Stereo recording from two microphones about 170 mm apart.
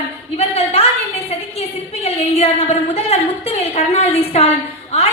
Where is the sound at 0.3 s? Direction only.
35° left (ahead or behind).